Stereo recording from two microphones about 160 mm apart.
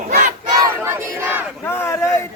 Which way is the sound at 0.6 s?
15° right (ahead or behind).